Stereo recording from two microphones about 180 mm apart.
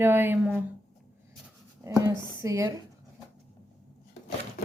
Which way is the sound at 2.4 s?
20° right (ahead or behind).